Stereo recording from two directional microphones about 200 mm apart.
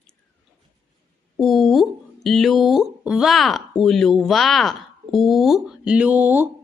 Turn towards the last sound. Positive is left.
turn(degrees=-10)  # may be behind; listen again after turning